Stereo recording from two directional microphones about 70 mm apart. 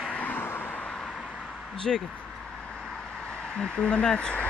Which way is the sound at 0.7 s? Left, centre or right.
Centre.